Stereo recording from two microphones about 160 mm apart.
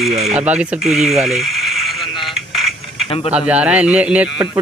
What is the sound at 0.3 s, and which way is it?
Speech, 5° right (ahead or behind).